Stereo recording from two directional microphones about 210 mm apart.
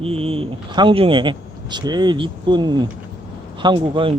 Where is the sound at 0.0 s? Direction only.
25° right (ahead or behind).